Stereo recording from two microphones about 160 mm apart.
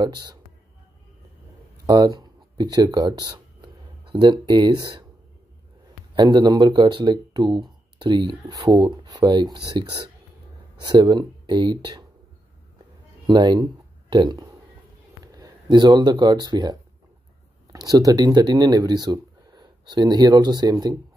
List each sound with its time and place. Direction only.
0.0 s speech: 25° right (ahead or behind)
1.9 s speech: 25° right (ahead or behind)
6.1 s speech: 25° right (ahead or behind)
13.3 s speech: 25° right (ahead or behind)
17.7 s speech: 25° right (ahead or behind)